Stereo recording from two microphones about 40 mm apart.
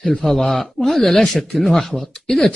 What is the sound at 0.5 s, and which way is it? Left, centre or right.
Speech, centre.